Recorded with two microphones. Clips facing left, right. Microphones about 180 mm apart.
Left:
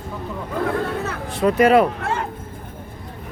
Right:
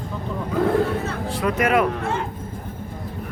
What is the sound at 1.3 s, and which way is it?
Speech, 30° left (ahead or behind).